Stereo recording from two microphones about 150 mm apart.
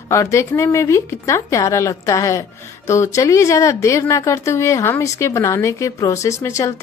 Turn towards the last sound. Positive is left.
turn(degrees=20)  # may be behind; listen again after turning